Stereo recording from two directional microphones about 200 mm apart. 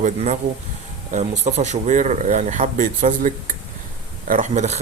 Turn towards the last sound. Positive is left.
turn(degrees=-35)  # may be behind; listen again after turning